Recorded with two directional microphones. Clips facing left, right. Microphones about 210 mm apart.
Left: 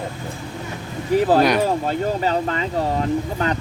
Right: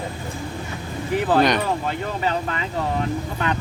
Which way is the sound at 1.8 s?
35° left (ahead or behind).